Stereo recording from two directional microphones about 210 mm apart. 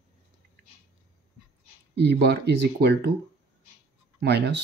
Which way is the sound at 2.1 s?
55° right (ahead or behind).